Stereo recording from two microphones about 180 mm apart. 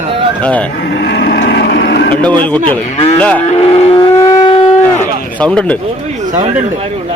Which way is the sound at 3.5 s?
30° left (ahead or behind).